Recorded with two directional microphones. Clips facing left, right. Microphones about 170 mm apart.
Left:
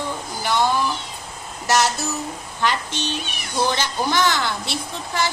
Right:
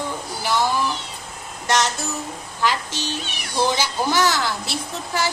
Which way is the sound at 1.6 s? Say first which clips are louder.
Left 2 dB; 5° left (ahead or behind).